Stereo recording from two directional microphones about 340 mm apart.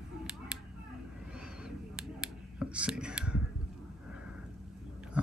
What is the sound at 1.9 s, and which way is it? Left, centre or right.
Finger snapping, centre.